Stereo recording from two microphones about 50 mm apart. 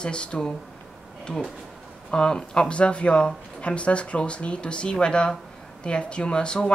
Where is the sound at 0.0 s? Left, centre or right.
Left.